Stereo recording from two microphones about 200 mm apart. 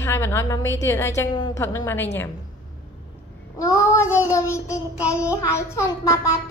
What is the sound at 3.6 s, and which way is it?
A woman's voice, 15° left (ahead or behind).